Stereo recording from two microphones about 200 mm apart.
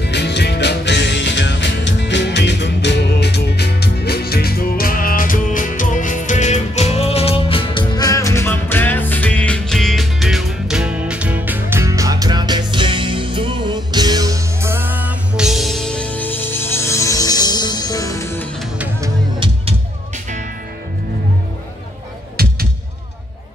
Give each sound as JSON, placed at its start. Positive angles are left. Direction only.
{"t": 0.0, "sound": "music", "side_deg": 60}
{"t": 22.4, "sound": "music", "side_deg": -50}